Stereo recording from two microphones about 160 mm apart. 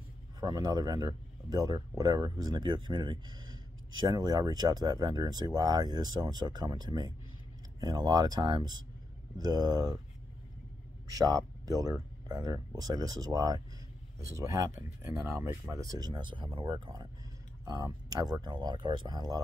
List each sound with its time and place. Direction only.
0.4 s speech: 25° right (ahead or behind)
11.1 s speech: 20° right (ahead or behind)